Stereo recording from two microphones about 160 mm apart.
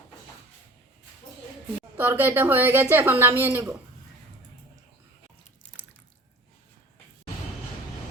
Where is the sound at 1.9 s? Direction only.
15° right (ahead or behind).